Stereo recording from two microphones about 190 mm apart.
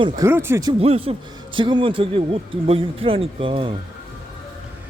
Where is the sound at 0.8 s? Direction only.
30° right (ahead or behind).